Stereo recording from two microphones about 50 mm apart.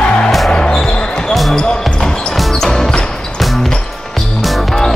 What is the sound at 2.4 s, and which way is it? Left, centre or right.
Music, centre.